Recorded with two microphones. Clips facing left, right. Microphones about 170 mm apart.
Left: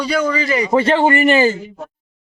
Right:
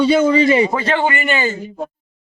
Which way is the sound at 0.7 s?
30° left (ahead or behind).